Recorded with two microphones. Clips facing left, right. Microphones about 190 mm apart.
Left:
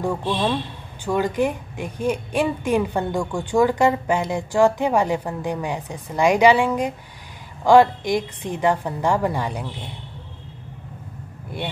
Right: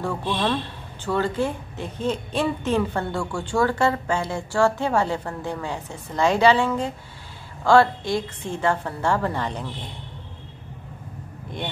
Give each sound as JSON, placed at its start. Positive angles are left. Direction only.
{"t": 0.3, "sound": "speech", "side_deg": 10}
{"t": 11.5, "sound": "speech", "side_deg": 5}